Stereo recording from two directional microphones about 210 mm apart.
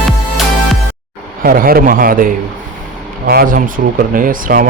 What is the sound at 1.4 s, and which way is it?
Speech, 45° right (ahead or behind).